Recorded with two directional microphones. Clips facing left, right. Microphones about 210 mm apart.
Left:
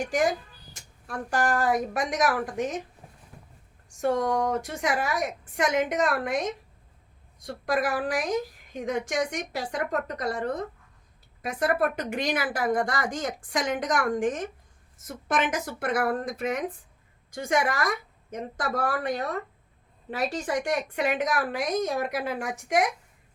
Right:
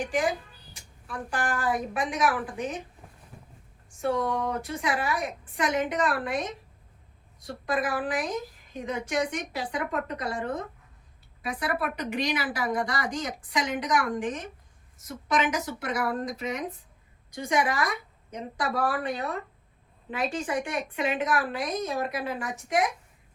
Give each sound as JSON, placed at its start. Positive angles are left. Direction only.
{"t": 0.7, "sound": "a woman's voice", "side_deg": 45}
{"t": 3.8, "sound": "a woman's voice", "side_deg": 45}
{"t": 7.6, "sound": "a woman's voice", "side_deg": 45}